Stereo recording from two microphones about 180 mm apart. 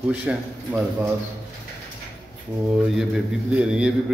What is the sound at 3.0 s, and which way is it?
Speech, 5° right (ahead or behind).